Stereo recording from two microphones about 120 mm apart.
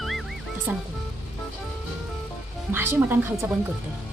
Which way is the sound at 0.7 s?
15° right (ahead or behind).